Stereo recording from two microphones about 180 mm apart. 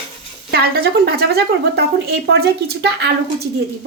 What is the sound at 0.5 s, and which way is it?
Speech, 60° right (ahead or behind).